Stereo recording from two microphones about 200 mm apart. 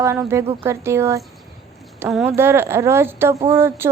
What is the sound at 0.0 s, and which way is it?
A woman's voice, 15° right (ahead or behind).